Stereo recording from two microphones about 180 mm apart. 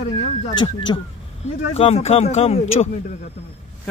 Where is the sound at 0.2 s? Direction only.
30° left (ahead or behind).